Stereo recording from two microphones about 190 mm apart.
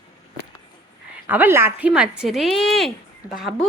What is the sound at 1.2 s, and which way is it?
Speech, 10° right (ahead or behind).